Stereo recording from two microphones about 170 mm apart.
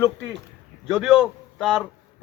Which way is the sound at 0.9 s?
Centre (ahead or behind).